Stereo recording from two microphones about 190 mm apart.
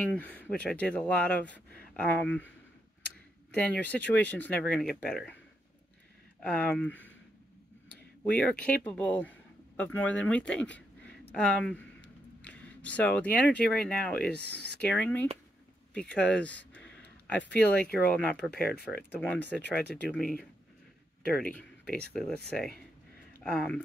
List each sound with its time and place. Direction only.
0.0 s speech: 5° left (ahead or behind)
3.5 s speech: 5° left (ahead or behind)
6.4 s speech: 5° left (ahead or behind)
8.2 s a man's voice: 5° left (ahead or behind)